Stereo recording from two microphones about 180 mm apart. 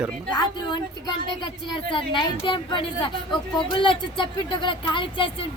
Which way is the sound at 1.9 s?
25° left (ahead or behind).